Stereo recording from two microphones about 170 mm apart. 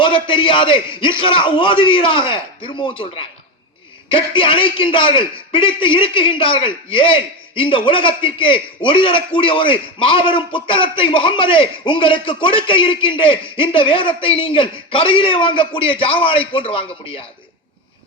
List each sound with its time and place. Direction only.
0.0 s a man's voice: 30° left (ahead or behind)
4.1 s a man's voice: 30° left (ahead or behind)